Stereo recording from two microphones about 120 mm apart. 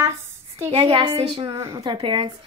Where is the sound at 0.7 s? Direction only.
50° right (ahead or behind).